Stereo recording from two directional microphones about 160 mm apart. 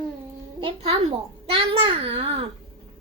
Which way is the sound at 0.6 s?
35° right (ahead or behind).